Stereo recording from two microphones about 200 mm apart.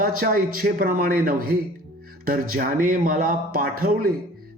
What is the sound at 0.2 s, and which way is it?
A man's voice, 45° right (ahead or behind).